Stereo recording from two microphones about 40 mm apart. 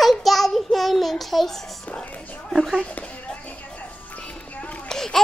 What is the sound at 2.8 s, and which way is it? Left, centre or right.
Speech, left.